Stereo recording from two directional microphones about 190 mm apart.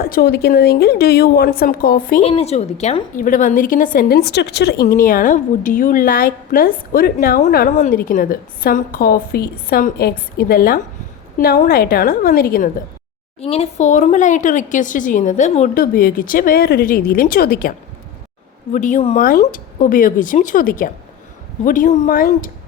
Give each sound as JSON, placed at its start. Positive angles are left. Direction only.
{"t": 0.0, "sound": "speech", "side_deg": 50}
{"t": 2.2, "sound": "a woman's voice", "side_deg": 30}
{"t": 13.4, "sound": "a woman's voice", "side_deg": 30}